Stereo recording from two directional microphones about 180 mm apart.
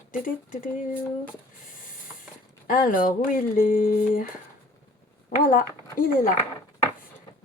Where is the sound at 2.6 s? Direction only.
45° left (ahead or behind).